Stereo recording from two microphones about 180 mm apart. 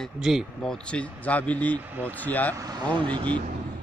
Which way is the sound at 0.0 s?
Centre (ahead or behind).